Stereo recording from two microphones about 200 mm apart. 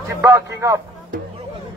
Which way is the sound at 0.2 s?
15° right (ahead or behind).